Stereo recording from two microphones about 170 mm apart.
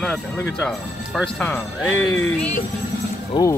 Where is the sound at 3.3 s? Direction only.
25° left (ahead or behind).